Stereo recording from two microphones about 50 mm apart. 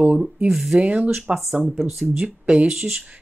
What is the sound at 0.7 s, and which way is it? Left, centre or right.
Speech, right.